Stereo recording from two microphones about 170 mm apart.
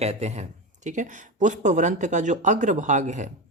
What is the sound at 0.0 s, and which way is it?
Speech, 40° right (ahead or behind).